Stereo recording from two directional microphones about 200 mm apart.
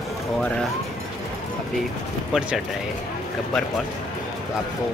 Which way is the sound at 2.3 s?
5° right (ahead or behind).